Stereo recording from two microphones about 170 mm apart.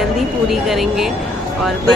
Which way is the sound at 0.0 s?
Centre (ahead or behind).